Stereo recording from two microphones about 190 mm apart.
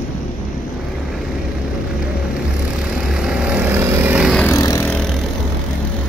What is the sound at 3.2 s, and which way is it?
Vehicle, 5° right (ahead or behind).